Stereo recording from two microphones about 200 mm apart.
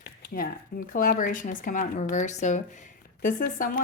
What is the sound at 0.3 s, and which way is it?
Speech, 45° left (ahead or behind).